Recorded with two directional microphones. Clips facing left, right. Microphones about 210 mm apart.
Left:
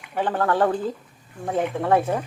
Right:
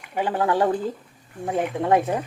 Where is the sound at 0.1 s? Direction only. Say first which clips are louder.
Even; 10° right (ahead or behind).